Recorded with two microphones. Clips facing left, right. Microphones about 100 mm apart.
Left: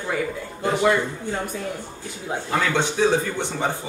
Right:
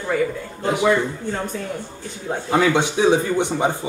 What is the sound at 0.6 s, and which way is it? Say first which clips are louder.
Speech: right 1 dB; 10° right (ahead or behind).